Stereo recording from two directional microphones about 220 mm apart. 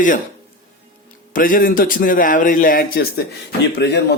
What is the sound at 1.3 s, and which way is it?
Speech, 40° left (ahead or behind).